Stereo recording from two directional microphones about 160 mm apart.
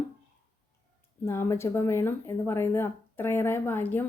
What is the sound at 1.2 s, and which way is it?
Speech, 15° left (ahead or behind).